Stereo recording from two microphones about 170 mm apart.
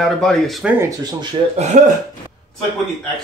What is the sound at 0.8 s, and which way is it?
Speech, 25° right (ahead or behind).